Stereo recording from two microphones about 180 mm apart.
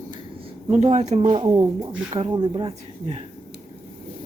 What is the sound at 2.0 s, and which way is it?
Speech, 30° right (ahead or behind).